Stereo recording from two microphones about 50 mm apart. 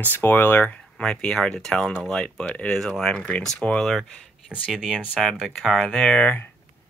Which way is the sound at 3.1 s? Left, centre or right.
Left.